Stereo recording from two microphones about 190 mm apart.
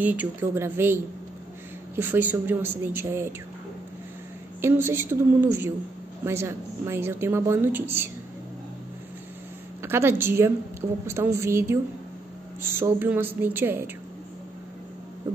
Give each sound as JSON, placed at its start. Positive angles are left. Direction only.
{"t": 0.0, "sound": "a woman's voice", "side_deg": -10}
{"t": 4.6, "sound": "a woman's voice", "side_deg": -10}
{"t": 9.8, "sound": "a woman's voice", "side_deg": -15}